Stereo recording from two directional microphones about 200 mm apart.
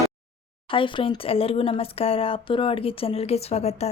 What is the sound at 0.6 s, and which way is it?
Speech, 25° left (ahead or behind).